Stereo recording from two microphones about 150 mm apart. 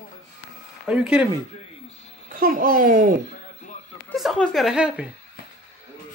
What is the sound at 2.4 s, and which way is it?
Speech, 70° right (ahead or behind).